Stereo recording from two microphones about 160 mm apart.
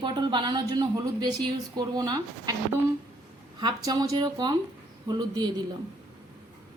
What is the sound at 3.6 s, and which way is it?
A woman's voice, 25° right (ahead or behind).